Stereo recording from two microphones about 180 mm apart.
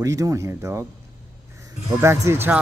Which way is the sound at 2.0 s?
15° right (ahead or behind).